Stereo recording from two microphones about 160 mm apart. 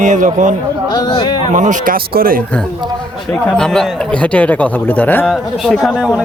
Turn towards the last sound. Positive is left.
turn(degrees=-5)  # may be behind; listen again after turning